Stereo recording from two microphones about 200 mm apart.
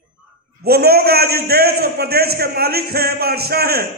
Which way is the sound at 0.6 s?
50° right (ahead or behind).